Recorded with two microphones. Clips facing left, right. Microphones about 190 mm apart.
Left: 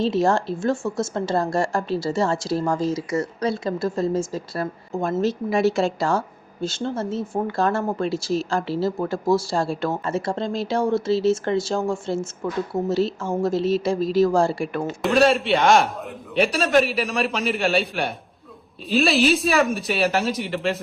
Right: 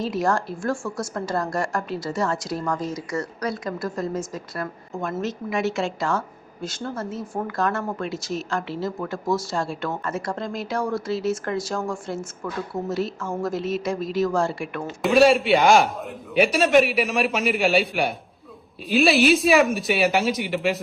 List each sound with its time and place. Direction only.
0.0 s a woman's voice: 25° left (ahead or behind)
15.0 s a man's voice: centre (ahead or behind)